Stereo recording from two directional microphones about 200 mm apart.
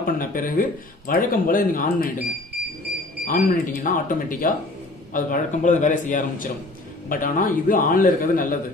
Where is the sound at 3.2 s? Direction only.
45° left (ahead or behind).